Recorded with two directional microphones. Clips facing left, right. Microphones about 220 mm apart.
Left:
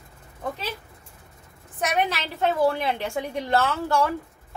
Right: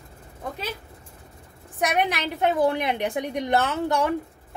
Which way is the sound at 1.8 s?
15° right (ahead or behind).